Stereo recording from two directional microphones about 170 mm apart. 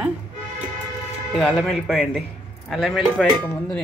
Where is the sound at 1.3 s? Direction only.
Centre (ahead or behind).